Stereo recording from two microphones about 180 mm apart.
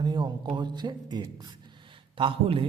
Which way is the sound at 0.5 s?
25° right (ahead or behind).